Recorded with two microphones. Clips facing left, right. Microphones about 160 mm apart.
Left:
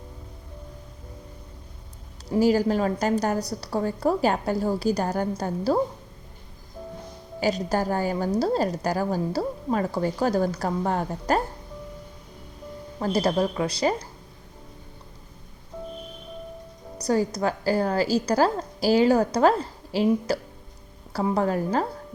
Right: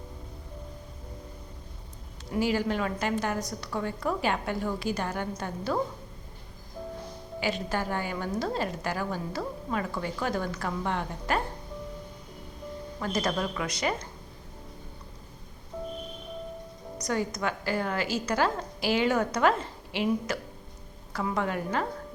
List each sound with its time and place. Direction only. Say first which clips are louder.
2.3 s a woman's voice: left 7 dB; 40° left (ahead or behind)
7.3 s a woman's voice: left 6 dB; 40° left (ahead or behind)
13.0 s a woman's voice: left 7 dB; 35° left (ahead or behind)
17.0 s a woman's voice: left 6 dB; 35° left (ahead or behind)